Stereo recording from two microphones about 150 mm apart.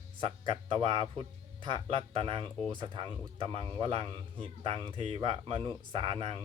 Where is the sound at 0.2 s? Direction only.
35° right (ahead or behind).